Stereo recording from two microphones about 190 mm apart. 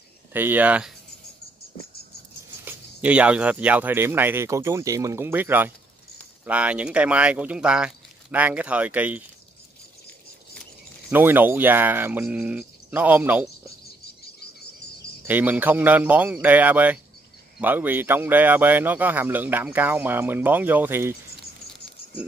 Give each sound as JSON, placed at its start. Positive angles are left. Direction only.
{"t": 0.3, "sound": "speech", "side_deg": -10}
{"t": 2.6, "sound": "speech", "side_deg": -5}
{"t": 11.1, "sound": "speech", "side_deg": -10}
{"t": 14.0, "sound": "cricket", "side_deg": 55}
{"t": 15.2, "sound": "speech", "side_deg": -10}